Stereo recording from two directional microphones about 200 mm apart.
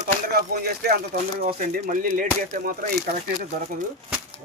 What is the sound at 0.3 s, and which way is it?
Speech, 50° right (ahead or behind).